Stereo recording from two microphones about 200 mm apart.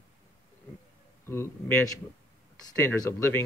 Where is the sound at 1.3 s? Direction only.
10° left (ahead or behind).